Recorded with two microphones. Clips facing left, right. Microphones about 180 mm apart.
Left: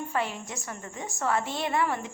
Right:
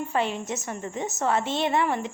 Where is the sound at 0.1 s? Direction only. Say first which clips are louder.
Right 4 dB; 20° right (ahead or behind).